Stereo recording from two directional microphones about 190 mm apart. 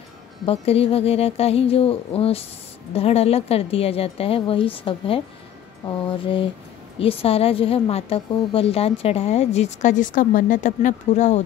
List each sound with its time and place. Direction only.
0.5 s a woman's voice: 30° left (ahead or behind)
5.9 s mantra: 25° left (ahead or behind)
7.0 s a woman's voice: 30° left (ahead or behind)